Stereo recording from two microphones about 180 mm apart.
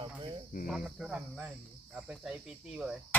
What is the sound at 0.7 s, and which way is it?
Cricket, 5° right (ahead or behind).